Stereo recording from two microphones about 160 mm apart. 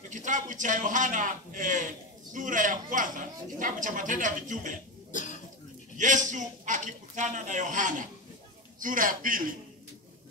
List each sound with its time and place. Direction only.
0.1 s a man's voice: 50° right (ahead or behind)
5.1 s cough: 50° left (ahead or behind)
5.9 s a man's voice: 50° right (ahead or behind)